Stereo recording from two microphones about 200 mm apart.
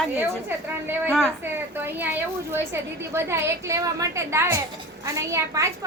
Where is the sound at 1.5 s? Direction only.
10° right (ahead or behind).